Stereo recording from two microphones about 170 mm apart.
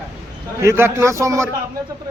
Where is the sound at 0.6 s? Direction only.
15° right (ahead or behind).